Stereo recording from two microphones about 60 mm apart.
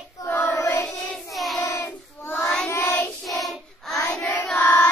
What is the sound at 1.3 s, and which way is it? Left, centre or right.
Child singing, centre.